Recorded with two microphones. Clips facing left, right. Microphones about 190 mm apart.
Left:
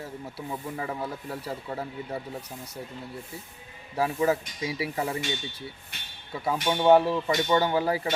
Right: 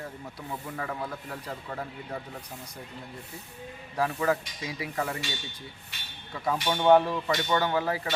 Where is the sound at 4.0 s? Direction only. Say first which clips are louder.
Left 2 dB; 15° left (ahead or behind).